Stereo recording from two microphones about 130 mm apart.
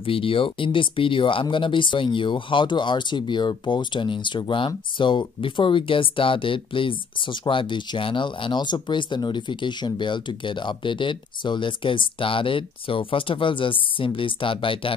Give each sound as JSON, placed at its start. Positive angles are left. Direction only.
{"t": 0.0, "sound": "speech", "side_deg": 45}